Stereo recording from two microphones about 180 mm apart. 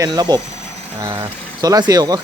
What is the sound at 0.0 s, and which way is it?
Speech, 20° right (ahead or behind).